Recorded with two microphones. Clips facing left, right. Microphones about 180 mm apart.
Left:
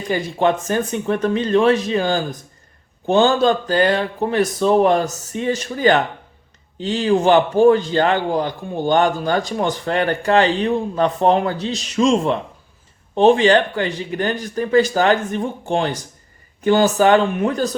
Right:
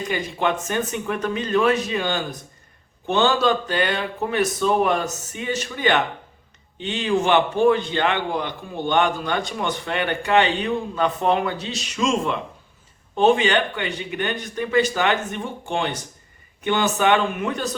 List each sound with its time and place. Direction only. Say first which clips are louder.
0.1 s a man's voice: left 7 dB; 35° left (ahead or behind)